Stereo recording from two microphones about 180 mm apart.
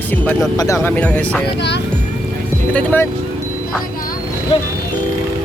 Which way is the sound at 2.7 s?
5° left (ahead or behind).